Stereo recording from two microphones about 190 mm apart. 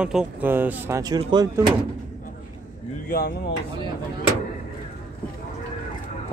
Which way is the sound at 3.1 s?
50° left (ahead or behind).